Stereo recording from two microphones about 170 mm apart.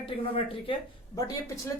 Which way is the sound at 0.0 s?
35° left (ahead or behind).